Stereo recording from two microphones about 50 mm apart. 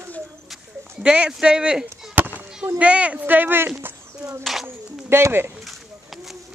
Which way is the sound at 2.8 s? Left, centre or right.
Right.